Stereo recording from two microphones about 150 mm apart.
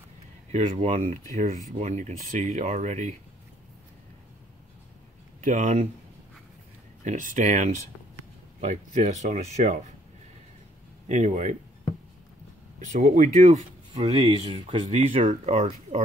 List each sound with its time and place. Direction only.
0.5 s speech: 45° right (ahead or behind)
5.4 s speech: 55° right (ahead or behind)
7.1 s speech: 60° right (ahead or behind)
11.1 s speech: 50° right (ahead or behind)
12.7 s speech: 55° right (ahead or behind)